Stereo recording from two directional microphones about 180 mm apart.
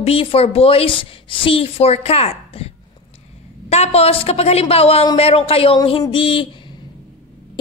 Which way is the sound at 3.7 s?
35° left (ahead or behind).